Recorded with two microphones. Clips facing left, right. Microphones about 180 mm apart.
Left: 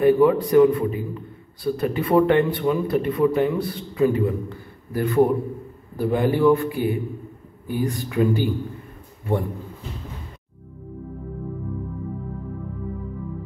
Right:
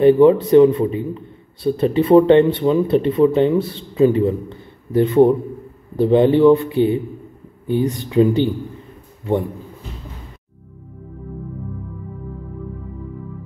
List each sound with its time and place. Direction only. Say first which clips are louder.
0.0 s speech: right 5 dB; 25° right (ahead or behind)